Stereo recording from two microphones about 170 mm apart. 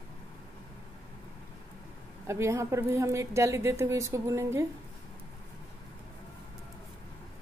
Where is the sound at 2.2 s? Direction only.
15° right (ahead or behind).